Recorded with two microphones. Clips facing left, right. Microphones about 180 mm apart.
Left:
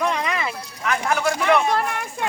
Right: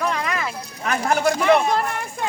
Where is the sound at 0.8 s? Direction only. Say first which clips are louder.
Right 2 dB; 35° right (ahead or behind).